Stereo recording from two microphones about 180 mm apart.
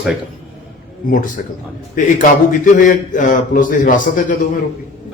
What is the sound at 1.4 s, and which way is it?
Speech, 50° left (ahead or behind).